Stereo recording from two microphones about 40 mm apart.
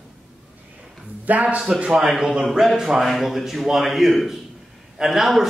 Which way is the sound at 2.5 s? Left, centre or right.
Centre.